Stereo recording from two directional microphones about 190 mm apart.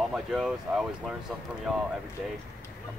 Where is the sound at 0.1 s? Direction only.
Centre (ahead or behind).